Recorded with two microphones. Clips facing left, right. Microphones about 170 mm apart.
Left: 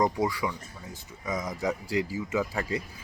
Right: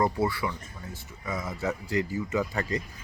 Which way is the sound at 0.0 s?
15° left (ahead or behind).